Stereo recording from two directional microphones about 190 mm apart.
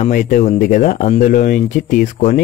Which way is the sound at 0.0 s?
45° left (ahead or behind).